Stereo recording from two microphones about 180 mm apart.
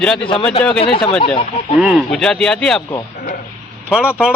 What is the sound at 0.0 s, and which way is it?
Speech, 5° left (ahead or behind).